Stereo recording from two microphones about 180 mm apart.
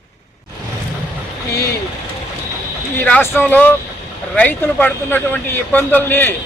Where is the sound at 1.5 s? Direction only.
15° left (ahead or behind).